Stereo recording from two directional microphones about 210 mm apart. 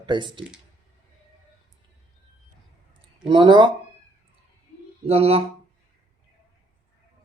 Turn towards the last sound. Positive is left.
turn(degrees=-30)  # may be behind; listen again after turning